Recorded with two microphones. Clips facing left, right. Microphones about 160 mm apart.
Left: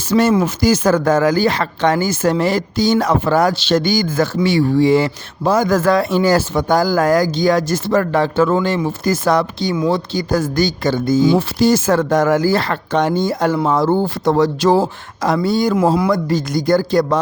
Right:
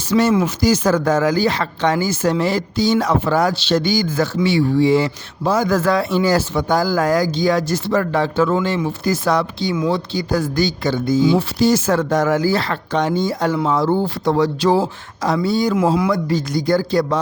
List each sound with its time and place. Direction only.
0.1 s speech: 45° left (ahead or behind)